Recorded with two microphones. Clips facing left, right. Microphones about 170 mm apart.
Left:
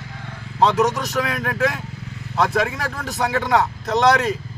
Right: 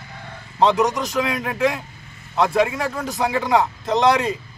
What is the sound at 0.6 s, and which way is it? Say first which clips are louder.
Speech: even; centre (ahead or behind).